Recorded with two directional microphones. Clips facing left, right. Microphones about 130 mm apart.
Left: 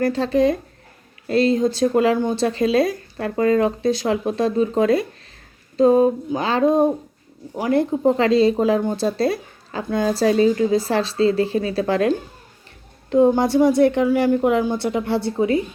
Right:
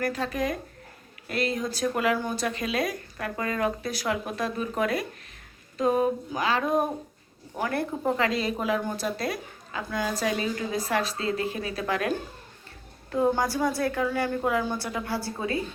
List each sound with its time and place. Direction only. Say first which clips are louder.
0.0 s speech: left 10 dB; 30° left (ahead or behind)
5.7 s a sound: left 9 dB; 30° left (ahead or behind)
7.5 s speech: left 9 dB; 20° left (ahead or behind)